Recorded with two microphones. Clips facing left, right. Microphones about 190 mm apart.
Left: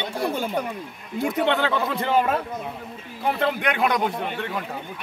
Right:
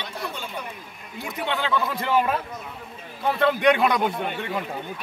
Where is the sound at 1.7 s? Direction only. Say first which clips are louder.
Left 1 dB; 25° left (ahead or behind).